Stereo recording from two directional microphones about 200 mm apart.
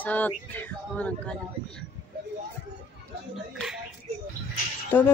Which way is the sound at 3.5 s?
Centre (ahead or behind).